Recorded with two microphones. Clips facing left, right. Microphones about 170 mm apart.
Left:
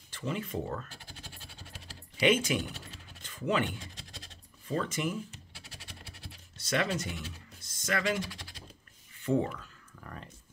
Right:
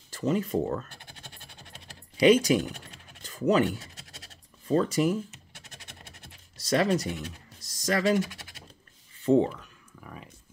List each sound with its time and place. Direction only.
0.1 s speech: 40° right (ahead or behind)
2.1 s speech: 35° right (ahead or behind)
6.6 s speech: 35° right (ahead or behind)
7.6 s typing: 35° right (ahead or behind)
9.2 s speech: 30° right (ahead or behind)
9.9 s a sound: 5° right (ahead or behind)